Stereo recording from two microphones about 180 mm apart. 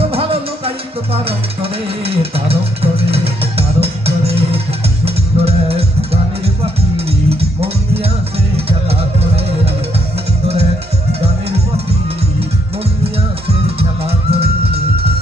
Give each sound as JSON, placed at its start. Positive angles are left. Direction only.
{"t": 0.0, "sound": "music", "side_deg": -30}
{"t": 1.1, "sound": "a sound", "side_deg": -30}
{"t": 5.0, "sound": "music", "side_deg": -35}
{"t": 13.7, "sound": "music", "side_deg": -35}